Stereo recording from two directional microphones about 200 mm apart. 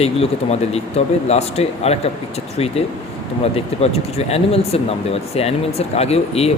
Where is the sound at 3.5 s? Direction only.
30° left (ahead or behind).